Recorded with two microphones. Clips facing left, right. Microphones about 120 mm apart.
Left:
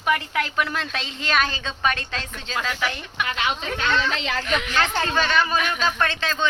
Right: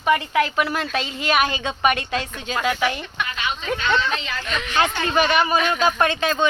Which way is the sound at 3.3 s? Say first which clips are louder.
Left 1 dB; 90° left.